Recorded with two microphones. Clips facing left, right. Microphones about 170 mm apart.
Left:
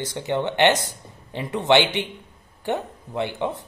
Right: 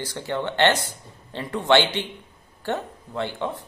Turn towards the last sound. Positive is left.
turn(degrees=20)  # may be behind; listen again after turning